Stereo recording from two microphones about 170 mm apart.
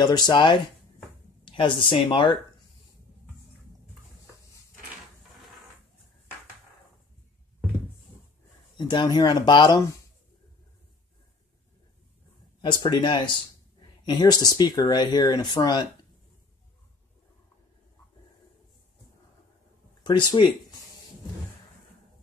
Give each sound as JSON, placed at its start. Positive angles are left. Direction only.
{"t": 0.0, "sound": "speech", "side_deg": 25}
{"t": 8.7, "sound": "speech", "side_deg": 25}
{"t": 12.6, "sound": "speech", "side_deg": 25}
{"t": 20.0, "sound": "speech", "side_deg": 25}